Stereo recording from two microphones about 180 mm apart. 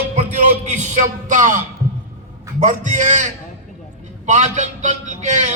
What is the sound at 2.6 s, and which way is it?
A man's voice, 45° right (ahead or behind).